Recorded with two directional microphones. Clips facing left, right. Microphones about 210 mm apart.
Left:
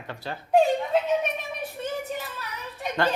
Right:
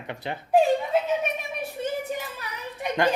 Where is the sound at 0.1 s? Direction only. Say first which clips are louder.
Right 2 dB; 20° right (ahead or behind).